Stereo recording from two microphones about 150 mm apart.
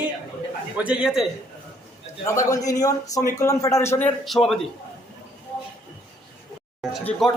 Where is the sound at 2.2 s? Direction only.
20° left (ahead or behind).